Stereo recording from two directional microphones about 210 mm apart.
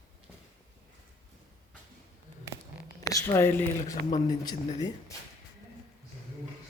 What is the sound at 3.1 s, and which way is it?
A woman's voice, 15° left (ahead or behind).